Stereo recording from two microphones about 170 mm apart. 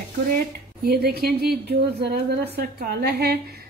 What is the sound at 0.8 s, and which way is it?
A woman's voice, 65° right (ahead or behind).